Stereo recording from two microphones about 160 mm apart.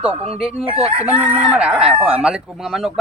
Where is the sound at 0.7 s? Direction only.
35° right (ahead or behind).